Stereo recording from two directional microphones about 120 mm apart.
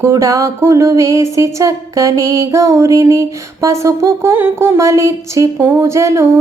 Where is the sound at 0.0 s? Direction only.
25° right (ahead or behind).